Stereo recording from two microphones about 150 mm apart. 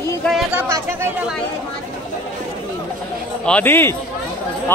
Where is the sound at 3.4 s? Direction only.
10° left (ahead or behind).